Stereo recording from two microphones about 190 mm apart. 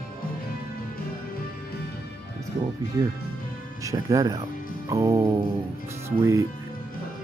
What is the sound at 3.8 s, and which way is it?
Speech, 15° right (ahead or behind).